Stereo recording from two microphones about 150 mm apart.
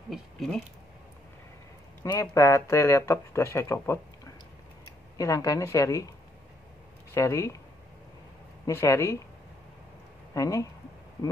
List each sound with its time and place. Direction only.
0.1 s speech: centre (ahead or behind)
2.1 s speech: 20° left (ahead or behind)
7.2 s speech: 20° left (ahead or behind)
8.6 s speech: 20° left (ahead or behind)
10.3 s speech: 20° left (ahead or behind)